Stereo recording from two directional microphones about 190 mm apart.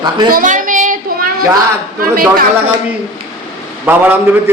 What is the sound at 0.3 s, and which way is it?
Child singing, 45° right (ahead or behind).